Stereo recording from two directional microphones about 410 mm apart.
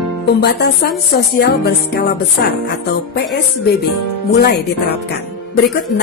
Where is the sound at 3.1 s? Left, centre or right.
Left.